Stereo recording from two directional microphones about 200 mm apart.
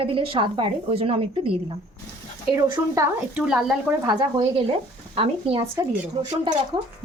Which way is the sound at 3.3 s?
Centre (ahead or behind).